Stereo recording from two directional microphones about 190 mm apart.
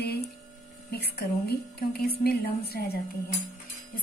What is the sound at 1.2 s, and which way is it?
A woman's voice, 55° left (ahead or behind).